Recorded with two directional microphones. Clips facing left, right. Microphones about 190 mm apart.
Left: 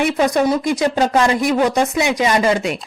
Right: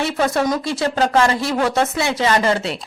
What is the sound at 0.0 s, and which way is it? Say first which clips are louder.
A woman's voice: left 3 dB; 15° left (ahead or behind).